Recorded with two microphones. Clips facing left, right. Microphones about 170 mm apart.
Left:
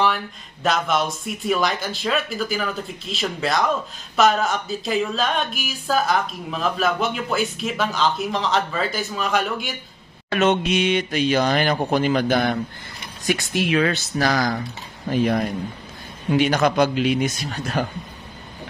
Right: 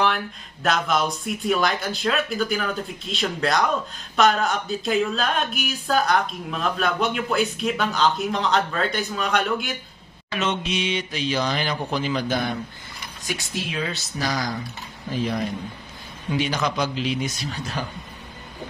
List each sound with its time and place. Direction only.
0.0 s speech: centre (ahead or behind)
10.3 s speech: 55° left (ahead or behind); by 14.5 s 70° left (ahead or behind)
15.0 s speech: 60° left (ahead or behind)